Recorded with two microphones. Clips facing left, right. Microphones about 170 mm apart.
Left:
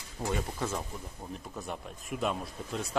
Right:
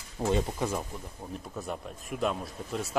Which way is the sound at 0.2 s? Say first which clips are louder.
Right 5 dB; 25° right (ahead or behind).